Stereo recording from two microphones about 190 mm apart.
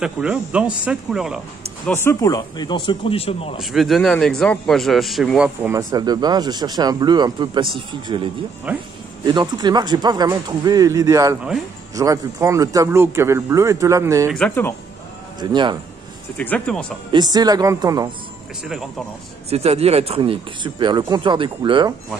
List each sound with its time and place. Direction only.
0.0 s speech: 5° right (ahead or behind)
2.0 s speech: 15° left (ahead or behind); by 3.5 s 30° left (ahead or behind)
3.5 s a man's voice: centre (ahead or behind); by 7.7 s 25° right (ahead or behind)
8.7 s a man's voice: 5° right (ahead or behind)
9.2 s a man's voice: 25° right (ahead or behind)
14.3 s speech: 10° left (ahead or behind)
15.4 s speech: 25° right (ahead or behind)
16.3 s speech: 5° left (ahead or behind)
17.1 s speech: 20° right (ahead or behind)
19.5 s speech: 35° right (ahead or behind)